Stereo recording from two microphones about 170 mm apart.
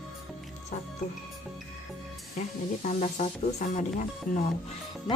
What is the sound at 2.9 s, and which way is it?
A woman's voice, 45° left (ahead or behind).